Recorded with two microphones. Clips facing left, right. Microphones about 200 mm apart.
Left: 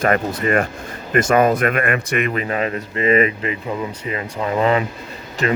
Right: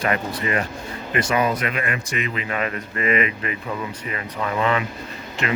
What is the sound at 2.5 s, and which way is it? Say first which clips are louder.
Speech: left 4 dB; 30° left (ahead or behind).